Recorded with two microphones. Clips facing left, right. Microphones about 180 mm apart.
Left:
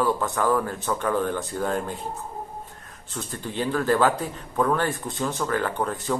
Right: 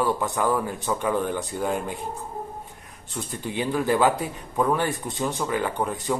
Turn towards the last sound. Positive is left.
turn(degrees=-15)  # may be behind; listen again after turning